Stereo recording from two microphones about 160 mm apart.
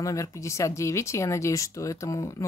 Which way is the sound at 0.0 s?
20° left (ahead or behind).